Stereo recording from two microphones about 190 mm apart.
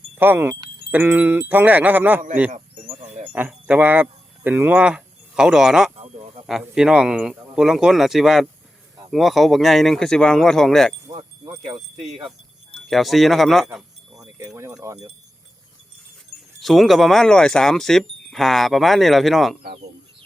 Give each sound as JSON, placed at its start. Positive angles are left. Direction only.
{"t": 0.2, "sound": "speech", "side_deg": -10}
{"t": 2.5, "sound": "a sound", "side_deg": -40}
{"t": 3.3, "sound": "speech", "side_deg": -10}
{"t": 11.5, "sound": "speech", "side_deg": -20}
{"t": 12.9, "sound": "speech", "side_deg": 0}
{"t": 14.3, "sound": "speech", "side_deg": -15}
{"t": 16.6, "sound": "speech", "side_deg": 0}